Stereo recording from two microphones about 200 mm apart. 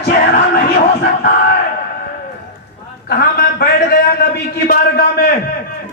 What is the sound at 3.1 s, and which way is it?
A man's voice, 50° left (ahead or behind).